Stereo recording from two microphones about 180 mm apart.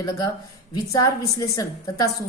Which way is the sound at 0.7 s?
20° left (ahead or behind).